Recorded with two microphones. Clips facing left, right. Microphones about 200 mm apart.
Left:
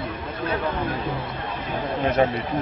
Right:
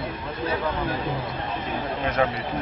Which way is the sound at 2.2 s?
30° left (ahead or behind).